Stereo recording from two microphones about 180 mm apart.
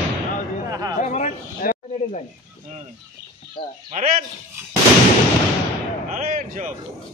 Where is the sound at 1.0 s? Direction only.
40° left (ahead or behind).